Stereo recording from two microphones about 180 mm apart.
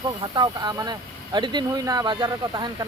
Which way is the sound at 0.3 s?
25° right (ahead or behind).